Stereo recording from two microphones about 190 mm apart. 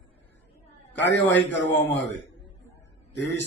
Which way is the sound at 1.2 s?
70° left (ahead or behind).